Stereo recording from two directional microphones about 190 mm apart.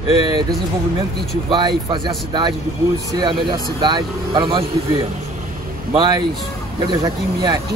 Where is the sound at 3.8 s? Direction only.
25° right (ahead or behind).